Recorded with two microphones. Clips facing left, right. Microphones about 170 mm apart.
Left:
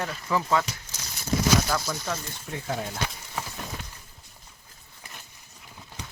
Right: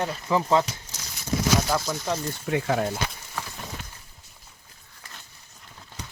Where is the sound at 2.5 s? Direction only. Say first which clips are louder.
Right 7 dB; 90° right.